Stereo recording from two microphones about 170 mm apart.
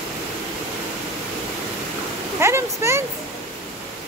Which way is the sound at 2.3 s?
15° right (ahead or behind).